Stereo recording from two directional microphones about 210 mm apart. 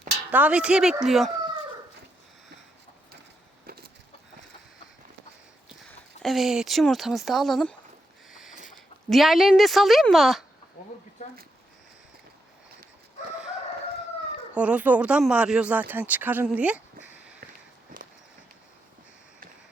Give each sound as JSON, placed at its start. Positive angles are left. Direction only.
{"t": 0.3, "sound": "speech", "side_deg": -5}
{"t": 3.7, "sound": "wood", "side_deg": -45}
{"t": 5.9, "sound": "speech", "side_deg": 0}
{"t": 8.3, "sound": "mechanisms", "side_deg": 0}
{"t": 9.0, "sound": "speech", "side_deg": 0}
{"t": 10.8, "sound": "speech", "side_deg": 35}
{"t": 14.5, "sound": "speech", "side_deg": -5}
{"t": 17.4, "sound": "walk", "side_deg": -45}